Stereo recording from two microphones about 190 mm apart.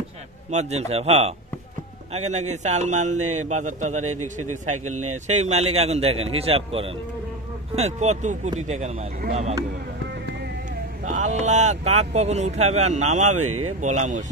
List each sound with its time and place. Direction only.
0.5 s speech: 35° right (ahead or behind)
11.1 s speech: 40° right (ahead or behind)